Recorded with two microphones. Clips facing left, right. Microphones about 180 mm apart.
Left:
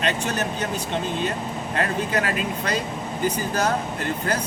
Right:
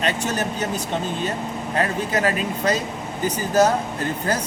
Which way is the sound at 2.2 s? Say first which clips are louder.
Right 5 dB; 40° right (ahead or behind).